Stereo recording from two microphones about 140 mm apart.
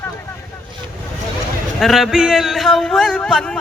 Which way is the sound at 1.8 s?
Centre (ahead or behind).